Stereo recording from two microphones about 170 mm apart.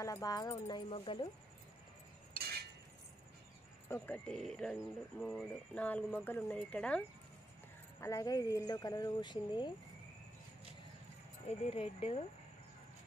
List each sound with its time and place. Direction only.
0.0 s speech: 20° left (ahead or behind)
2.3 s a sound: 70° right (ahead or behind)
3.9 s speech: 10° left (ahead or behind)
8.0 s speech: 20° left (ahead or behind)
11.4 s speech: 35° left (ahead or behind)